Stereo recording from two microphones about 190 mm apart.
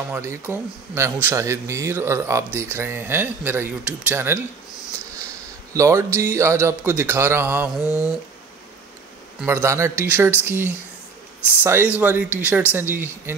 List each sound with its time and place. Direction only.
0.1 s speech: 15° right (ahead or behind)
5.2 s a sound: 15° right (ahead or behind)
6.3 s speech: 15° right (ahead or behind)
7.8 s speech: 15° left (ahead or behind)
9.4 s speech: 15° right (ahead or behind)